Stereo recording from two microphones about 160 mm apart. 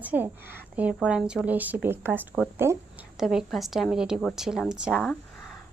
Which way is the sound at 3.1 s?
Centre (ahead or behind).